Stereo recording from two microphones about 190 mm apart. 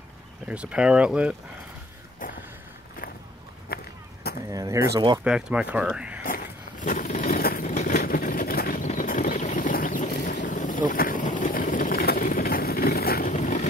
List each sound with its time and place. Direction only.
0.5 s speech: 5° right (ahead or behind)
3.6 s a sound: 55° left (ahead or behind)
4.5 s speech: 15° right (ahead or behind)
5.2 s speech: 5° right (ahead or behind)
6.2 s vehicle: 45° left (ahead or behind)